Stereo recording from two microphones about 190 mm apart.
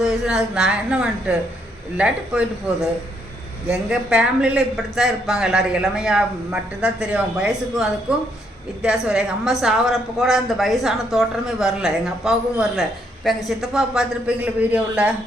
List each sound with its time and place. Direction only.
0.0 s a man's voice: 5° right (ahead or behind)
3.7 s a man's voice: 5° right (ahead or behind)